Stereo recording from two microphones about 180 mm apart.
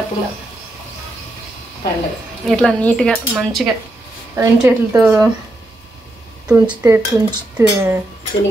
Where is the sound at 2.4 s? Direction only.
5° left (ahead or behind).